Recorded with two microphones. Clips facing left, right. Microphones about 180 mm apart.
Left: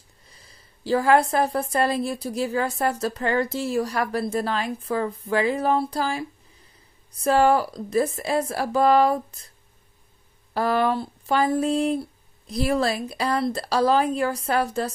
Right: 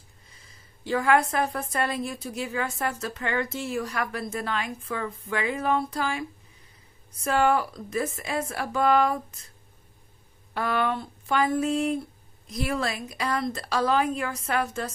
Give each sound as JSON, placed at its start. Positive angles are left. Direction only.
{"t": 0.3, "sound": "a woman's voice", "side_deg": 35}
{"t": 10.5, "sound": "a woman's voice", "side_deg": 35}